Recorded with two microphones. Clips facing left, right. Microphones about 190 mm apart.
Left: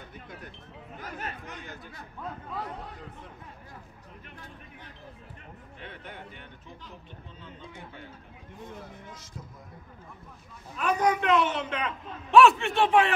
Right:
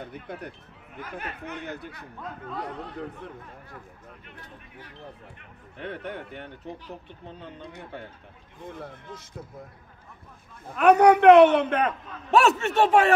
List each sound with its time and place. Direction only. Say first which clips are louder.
0.0 s a man's voice: right 7 dB; 55° right (ahead or behind)
1.0 s speech: right 2 dB; 40° left (ahead or behind)
1.4 s a man's voice: right 7 dB; 65° right (ahead or behind)
5.8 s a man's voice: right 10 dB; 60° right (ahead or behind)
10.7 s a man's voice: right 9 dB; 65° right (ahead or behind); by 13.1 s 45° right (ahead or behind)